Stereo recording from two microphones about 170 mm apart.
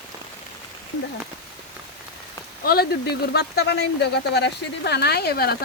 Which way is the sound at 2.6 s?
65° left (ahead or behind).